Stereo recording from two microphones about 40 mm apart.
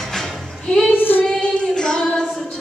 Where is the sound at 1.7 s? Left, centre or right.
Centre.